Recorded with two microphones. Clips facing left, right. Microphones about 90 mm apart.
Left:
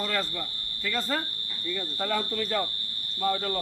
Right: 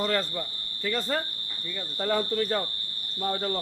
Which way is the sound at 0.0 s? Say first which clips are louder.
Right 3 dB; 30° right (ahead or behind).